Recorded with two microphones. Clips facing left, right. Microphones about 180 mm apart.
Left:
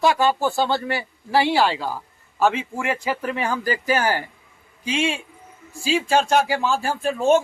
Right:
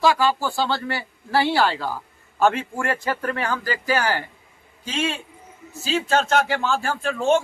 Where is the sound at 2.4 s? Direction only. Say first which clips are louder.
Right 1 dB; centre (ahead or behind).